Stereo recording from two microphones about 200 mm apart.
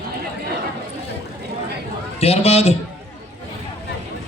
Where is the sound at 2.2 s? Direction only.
30° left (ahead or behind).